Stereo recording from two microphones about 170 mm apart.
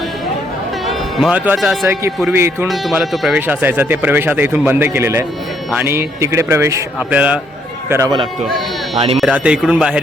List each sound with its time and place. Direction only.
0.9 s music: centre (ahead or behind)
1.5 s speech: centre (ahead or behind)
2.3 s a man's voice: 15° right (ahead or behind)
2.6 s speech: centre (ahead or behind)
3.4 s a man's voice: 10° right (ahead or behind)
9.1 s speech: 5° right (ahead or behind)